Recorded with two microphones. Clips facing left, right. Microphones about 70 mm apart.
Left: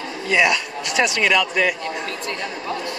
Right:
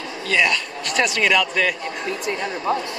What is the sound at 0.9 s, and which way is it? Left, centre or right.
Speech, centre.